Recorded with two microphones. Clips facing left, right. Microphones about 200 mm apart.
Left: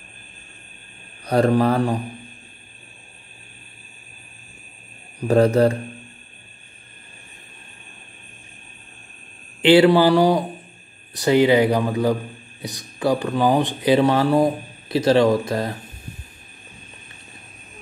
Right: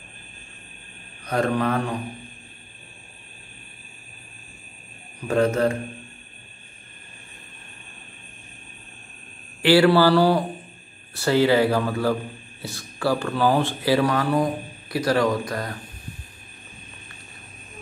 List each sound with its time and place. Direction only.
1.2 s speech: 35° left (ahead or behind)
5.3 s speech: 35° left (ahead or behind)
9.6 s speech: 20° left (ahead or behind)